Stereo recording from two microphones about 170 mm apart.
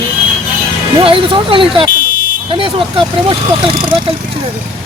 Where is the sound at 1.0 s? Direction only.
30° right (ahead or behind).